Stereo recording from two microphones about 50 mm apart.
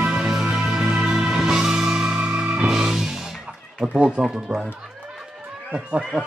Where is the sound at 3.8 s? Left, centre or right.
Centre.